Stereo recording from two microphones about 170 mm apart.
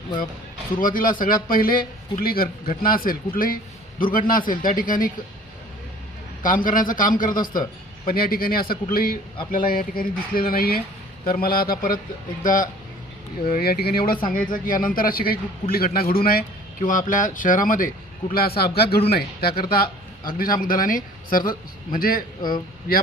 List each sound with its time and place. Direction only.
0.8 s speech: 55° left (ahead or behind)
6.4 s a man's voice: 55° left (ahead or behind)
22.4 s speech: 25° left (ahead or behind)